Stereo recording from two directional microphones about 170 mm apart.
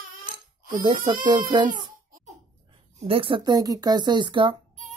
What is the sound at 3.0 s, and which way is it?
Speech, 30° right (ahead or behind).